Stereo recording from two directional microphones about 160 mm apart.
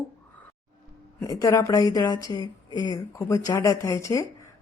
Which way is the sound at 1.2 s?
20° left (ahead or behind).